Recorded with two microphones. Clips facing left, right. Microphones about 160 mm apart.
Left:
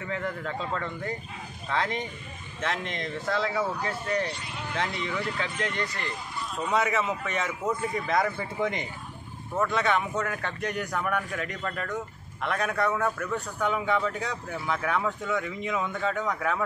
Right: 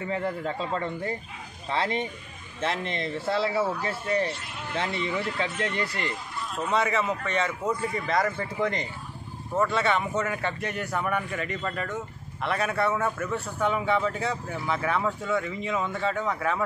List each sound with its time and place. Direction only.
0.0 s speech: 30° right (ahead or behind)
5.5 s speech: 5° right (ahead or behind)